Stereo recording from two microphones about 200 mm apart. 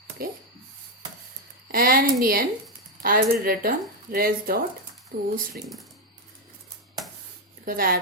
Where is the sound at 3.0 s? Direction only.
45° right (ahead or behind).